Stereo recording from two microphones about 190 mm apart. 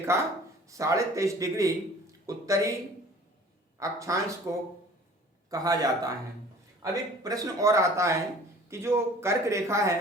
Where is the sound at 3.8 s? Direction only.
15° right (ahead or behind).